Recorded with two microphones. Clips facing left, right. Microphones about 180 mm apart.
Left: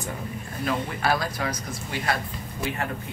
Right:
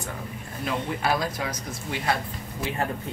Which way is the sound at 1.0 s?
20° right (ahead or behind).